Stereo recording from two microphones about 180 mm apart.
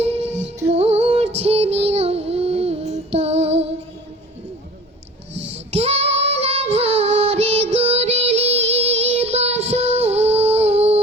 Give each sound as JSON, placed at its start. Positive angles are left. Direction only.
{"t": 0.0, "sound": "music", "side_deg": -35}
{"t": 1.4, "sound": "child singing", "side_deg": -35}
{"t": 5.4, "sound": "female singing", "side_deg": -35}